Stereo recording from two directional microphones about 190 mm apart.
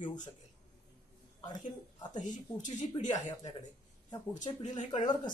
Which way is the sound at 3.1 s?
20° left (ahead or behind).